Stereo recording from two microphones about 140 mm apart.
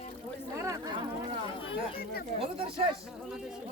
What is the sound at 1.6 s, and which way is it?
Speech, 40° left (ahead or behind).